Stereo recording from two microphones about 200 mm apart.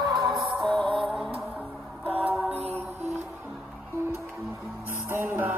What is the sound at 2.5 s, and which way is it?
Music, 30° right (ahead or behind).